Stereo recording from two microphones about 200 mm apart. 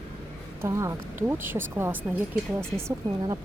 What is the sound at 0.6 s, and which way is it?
Speech, 15° right (ahead or behind).